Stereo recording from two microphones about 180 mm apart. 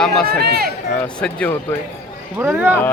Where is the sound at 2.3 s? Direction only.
10° right (ahead or behind).